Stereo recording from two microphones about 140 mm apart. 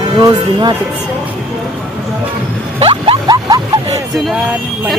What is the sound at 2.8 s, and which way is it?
Music, 40° right (ahead or behind).